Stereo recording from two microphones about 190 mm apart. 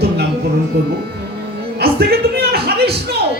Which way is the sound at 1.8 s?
55° right (ahead or behind).